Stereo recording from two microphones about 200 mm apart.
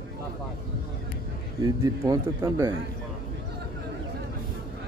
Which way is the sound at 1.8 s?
15° right (ahead or behind).